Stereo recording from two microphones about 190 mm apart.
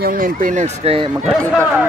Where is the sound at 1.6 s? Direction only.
5° right (ahead or behind).